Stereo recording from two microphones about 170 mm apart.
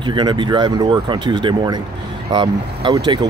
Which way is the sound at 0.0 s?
25° right (ahead or behind).